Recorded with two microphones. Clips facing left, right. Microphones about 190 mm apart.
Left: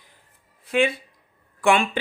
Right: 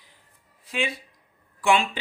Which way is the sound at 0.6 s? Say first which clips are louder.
Left 8 dB; 55° left (ahead or behind).